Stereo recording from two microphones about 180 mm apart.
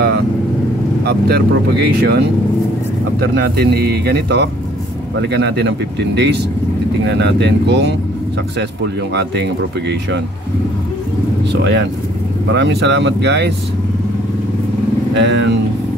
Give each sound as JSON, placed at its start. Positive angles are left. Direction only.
{"t": 1.0, "sound": "speech", "side_deg": -65}
{"t": 3.3, "sound": "speech", "side_deg": -65}
{"t": 9.1, "sound": "speech", "side_deg": -70}
{"t": 11.5, "sound": "speech", "side_deg": -75}
{"t": 15.1, "sound": "speech", "side_deg": -75}